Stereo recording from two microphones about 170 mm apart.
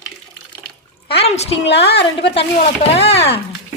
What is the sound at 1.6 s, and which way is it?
Speech, 85° left.